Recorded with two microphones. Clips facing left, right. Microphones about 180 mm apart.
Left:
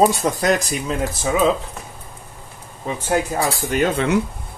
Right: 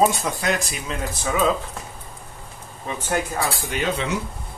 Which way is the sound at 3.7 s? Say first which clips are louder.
Left 8 dB; 50° left (ahead or behind).